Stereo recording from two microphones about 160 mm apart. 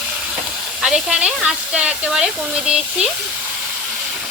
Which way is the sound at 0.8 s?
5° right (ahead or behind).